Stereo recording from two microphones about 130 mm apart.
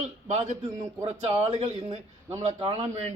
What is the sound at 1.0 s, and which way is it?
A man's voice, 50° right (ahead or behind).